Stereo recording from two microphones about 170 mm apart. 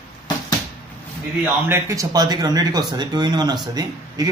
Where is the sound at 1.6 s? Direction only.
15° right (ahead or behind).